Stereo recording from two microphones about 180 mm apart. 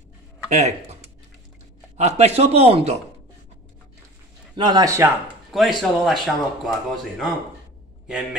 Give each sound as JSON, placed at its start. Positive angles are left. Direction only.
{"t": 0.5, "sound": "speech", "side_deg": -40}
{"t": 2.0, "sound": "a man's voice", "side_deg": -40}
{"t": 4.6, "sound": "speech", "side_deg": -25}
{"t": 5.5, "sound": "speech", "side_deg": 0}